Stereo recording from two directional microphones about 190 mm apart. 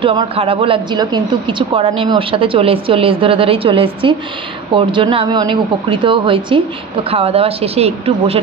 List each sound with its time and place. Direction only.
0.0 s a woman's voice: 30° right (ahead or behind)